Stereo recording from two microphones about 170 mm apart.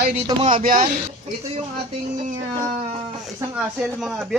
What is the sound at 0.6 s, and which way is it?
Speech, 55° right (ahead or behind).